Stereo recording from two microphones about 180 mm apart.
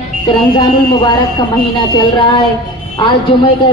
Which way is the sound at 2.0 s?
25° left (ahead or behind).